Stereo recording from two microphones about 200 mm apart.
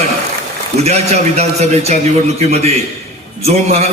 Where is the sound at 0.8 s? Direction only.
35° right (ahead or behind).